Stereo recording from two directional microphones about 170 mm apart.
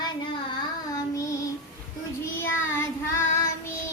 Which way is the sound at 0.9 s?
20° left (ahead or behind).